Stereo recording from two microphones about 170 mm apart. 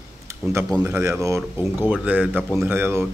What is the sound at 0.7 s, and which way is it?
Speech, 15° right (ahead or behind).